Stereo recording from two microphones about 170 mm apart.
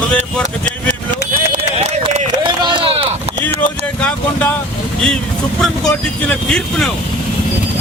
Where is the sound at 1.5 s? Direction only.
40° right (ahead or behind).